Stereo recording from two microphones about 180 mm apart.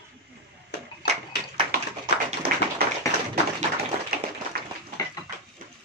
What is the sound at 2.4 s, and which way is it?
Tap, 60° right (ahead or behind).